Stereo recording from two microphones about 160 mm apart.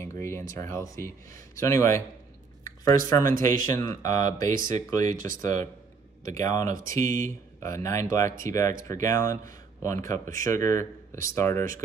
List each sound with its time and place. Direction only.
0.0 s speech: 15° left (ahead or behind)
2.6 s a sound: 20° left (ahead or behind)
3.1 s speech: 20° left (ahead or behind)
5.1 s speech: 60° right (ahead or behind)
5.4 s speech: 20° left (ahead or behind)